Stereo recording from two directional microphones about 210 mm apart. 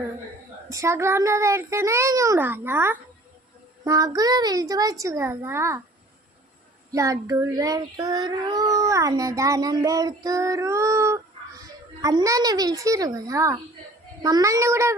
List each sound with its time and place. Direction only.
0.7 s child singing: 15° right (ahead or behind)
6.9 s child singing: 15° right (ahead or behind)